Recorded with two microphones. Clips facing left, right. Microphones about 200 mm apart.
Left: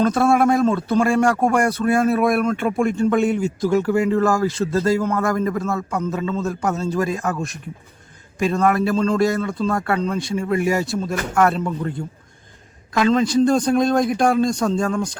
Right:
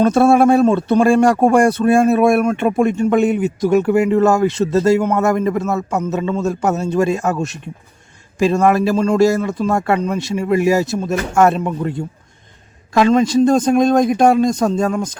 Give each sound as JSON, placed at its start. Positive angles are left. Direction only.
{"t": 0.1, "sound": "speech", "side_deg": -30}